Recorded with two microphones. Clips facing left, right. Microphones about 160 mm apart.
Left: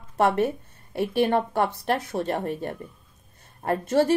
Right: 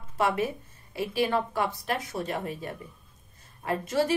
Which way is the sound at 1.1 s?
60° left (ahead or behind).